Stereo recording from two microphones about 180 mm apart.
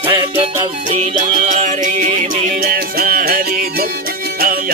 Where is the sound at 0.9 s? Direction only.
45° right (ahead or behind).